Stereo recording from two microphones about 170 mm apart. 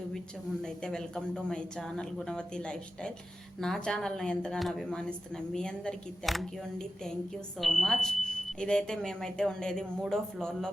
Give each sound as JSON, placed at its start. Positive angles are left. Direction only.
{"t": 0.6, "sound": "speech", "side_deg": 5}